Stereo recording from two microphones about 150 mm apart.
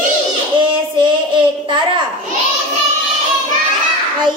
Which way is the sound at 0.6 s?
30° right (ahead or behind).